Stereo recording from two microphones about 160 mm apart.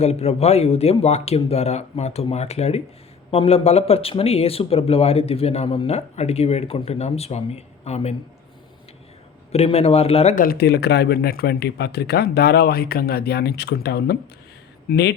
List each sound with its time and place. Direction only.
0.0 s speech: 40° left (ahead or behind)
9.5 s speech: 40° left (ahead or behind)
10.3 s speech: 65° left (ahead or behind); by 15.1 s 90° left